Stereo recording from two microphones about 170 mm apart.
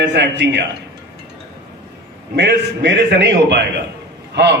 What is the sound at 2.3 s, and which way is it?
A man's voice, 90° right.